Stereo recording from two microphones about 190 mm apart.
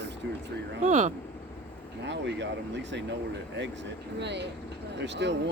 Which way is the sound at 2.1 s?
70° right (ahead or behind).